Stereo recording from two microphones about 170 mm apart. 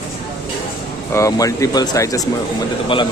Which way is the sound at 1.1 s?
20° left (ahead or behind).